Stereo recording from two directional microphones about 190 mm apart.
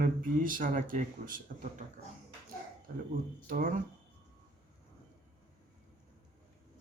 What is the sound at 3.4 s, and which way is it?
Speech, 45° right (ahead or behind).